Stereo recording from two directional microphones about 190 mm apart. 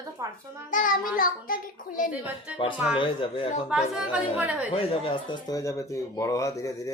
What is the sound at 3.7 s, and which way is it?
Speech, 5° right (ahead or behind).